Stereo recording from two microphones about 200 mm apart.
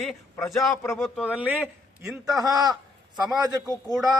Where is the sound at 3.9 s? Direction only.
Centre (ahead or behind).